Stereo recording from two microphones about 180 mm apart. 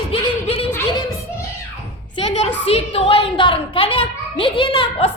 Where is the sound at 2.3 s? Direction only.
35° left (ahead or behind).